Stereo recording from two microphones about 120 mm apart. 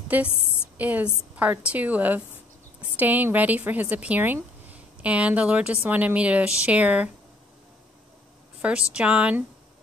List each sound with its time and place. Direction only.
0.1 s speech: 15° right (ahead or behind)
8.5 s a woman's voice: 10° right (ahead or behind)